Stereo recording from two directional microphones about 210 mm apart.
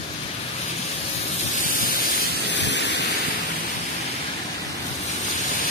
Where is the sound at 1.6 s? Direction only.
40° left (ahead or behind).